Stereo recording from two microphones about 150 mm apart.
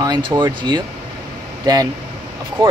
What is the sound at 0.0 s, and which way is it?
Speech, 30° right (ahead or behind).